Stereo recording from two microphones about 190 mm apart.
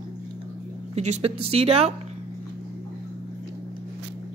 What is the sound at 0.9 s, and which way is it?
A woman's voice, 35° right (ahead or behind).